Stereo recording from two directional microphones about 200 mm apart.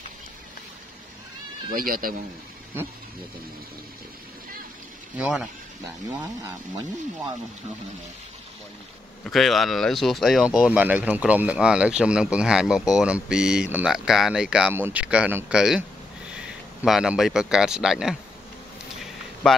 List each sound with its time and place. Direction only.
1.7 s speech: 45° right (ahead or behind)
5.1 s speech: 5° right (ahead or behind)
9.2 s speech: centre (ahead or behind)